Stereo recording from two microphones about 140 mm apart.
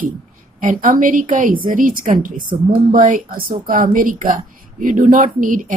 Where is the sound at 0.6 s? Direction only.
70° right (ahead or behind).